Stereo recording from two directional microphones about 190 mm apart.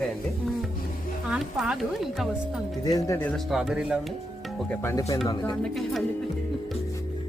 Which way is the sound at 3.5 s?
5° right (ahead or behind).